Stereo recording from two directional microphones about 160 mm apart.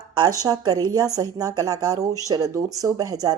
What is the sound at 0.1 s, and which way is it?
A woman's voice, 25° right (ahead or behind).